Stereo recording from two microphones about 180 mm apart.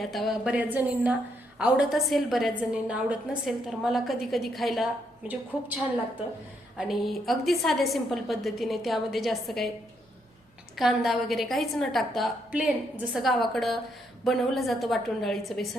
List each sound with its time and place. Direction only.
0.0 s a woman's voice: centre (ahead or behind)
6.7 s a woman's voice: centre (ahead or behind)
10.8 s a woman's voice: centre (ahead or behind)